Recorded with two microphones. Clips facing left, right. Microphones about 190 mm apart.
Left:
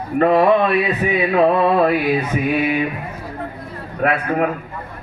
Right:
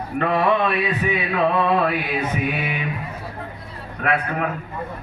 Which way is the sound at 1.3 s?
40° left (ahead or behind).